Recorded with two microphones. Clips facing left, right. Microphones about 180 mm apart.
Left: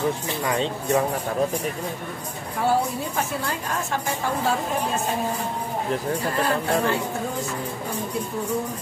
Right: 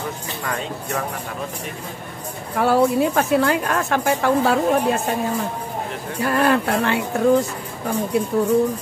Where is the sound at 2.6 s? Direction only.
75° right (ahead or behind).